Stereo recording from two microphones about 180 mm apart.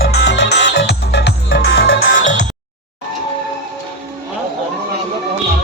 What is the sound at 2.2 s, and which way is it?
Music, 45° left (ahead or behind).